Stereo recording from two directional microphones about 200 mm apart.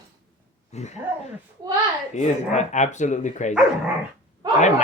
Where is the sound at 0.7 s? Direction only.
35° left (ahead or behind).